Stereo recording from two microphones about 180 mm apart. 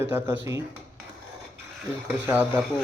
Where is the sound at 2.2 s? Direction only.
10° right (ahead or behind).